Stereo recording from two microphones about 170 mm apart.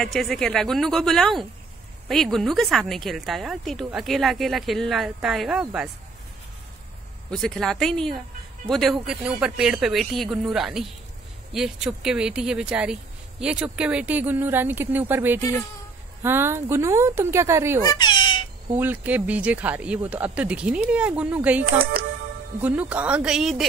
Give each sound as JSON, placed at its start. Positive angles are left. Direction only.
{"t": 0.0, "sound": "a woman's voice", "side_deg": 0}
{"t": 7.2, "sound": "a woman's voice", "side_deg": 5}
{"t": 17.9, "sound": "chicken", "side_deg": 25}
{"t": 18.7, "sound": "speech", "side_deg": -10}